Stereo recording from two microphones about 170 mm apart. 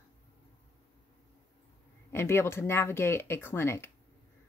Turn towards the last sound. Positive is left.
turn(degrees=15)  # may be behind; listen again after turning